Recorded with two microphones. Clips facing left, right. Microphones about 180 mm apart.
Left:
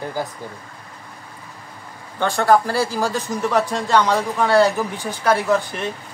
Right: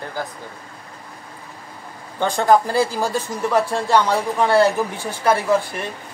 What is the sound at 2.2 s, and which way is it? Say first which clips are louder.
Speech: even; 15° right (ahead or behind).